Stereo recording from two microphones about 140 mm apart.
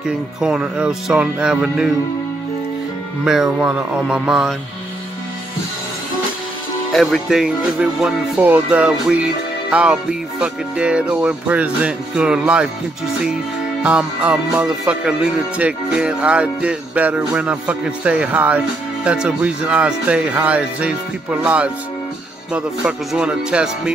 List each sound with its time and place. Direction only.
0.0 s speech: 5° right (ahead or behind)
3.3 s speech: 5° right (ahead or behind)
6.9 s speech: centre (ahead or behind)
13.8 s speech: 10° right (ahead or behind)